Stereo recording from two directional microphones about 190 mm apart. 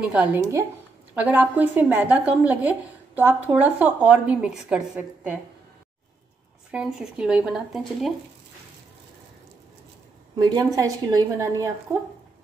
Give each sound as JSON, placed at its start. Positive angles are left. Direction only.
{"t": 0.1, "sound": "a woman's voice", "side_deg": -10}
{"t": 6.7, "sound": "speech", "side_deg": -5}
{"t": 10.3, "sound": "a woman's voice", "side_deg": -20}